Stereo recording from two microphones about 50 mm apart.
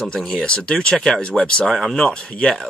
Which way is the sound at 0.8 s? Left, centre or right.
Centre.